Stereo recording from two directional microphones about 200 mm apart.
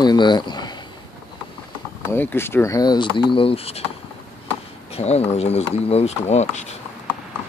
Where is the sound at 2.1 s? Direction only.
10° left (ahead or behind); by 3.8 s 30° left (ahead or behind).